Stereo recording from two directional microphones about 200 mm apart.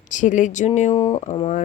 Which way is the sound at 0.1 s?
40° left (ahead or behind).